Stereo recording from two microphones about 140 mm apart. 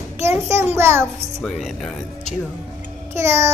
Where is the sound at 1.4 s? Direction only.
Centre (ahead or behind).